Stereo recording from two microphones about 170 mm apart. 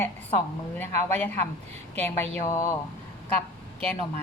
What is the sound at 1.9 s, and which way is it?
Speech, 10° left (ahead or behind).